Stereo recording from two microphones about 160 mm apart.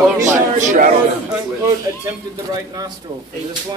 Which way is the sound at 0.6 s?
55° right (ahead or behind).